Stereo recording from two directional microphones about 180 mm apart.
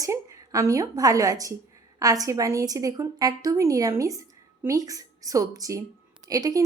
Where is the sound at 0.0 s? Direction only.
15° right (ahead or behind).